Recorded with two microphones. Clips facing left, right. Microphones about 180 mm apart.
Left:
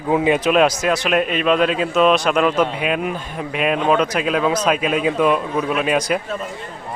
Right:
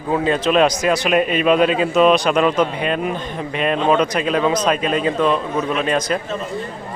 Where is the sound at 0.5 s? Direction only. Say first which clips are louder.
Right 1 dB; 5° left (ahead or behind).